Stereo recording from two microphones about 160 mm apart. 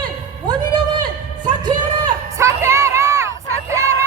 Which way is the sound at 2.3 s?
20° right (ahead or behind).